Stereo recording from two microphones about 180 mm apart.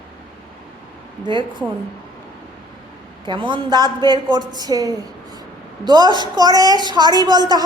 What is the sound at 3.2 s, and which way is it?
A woman's voice, 25° right (ahead or behind).